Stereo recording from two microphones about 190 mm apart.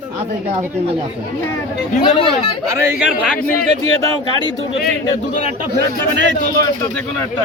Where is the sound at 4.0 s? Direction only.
25° left (ahead or behind).